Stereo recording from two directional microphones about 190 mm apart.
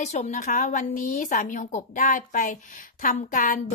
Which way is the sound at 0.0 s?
35° left (ahead or behind).